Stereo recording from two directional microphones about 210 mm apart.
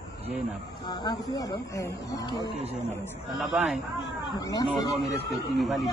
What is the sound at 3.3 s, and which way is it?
Speech, centre (ahead or behind).